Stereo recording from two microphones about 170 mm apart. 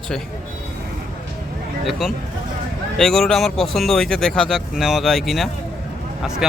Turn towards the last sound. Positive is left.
turn(degrees=-5)  # may be behind; listen again after turning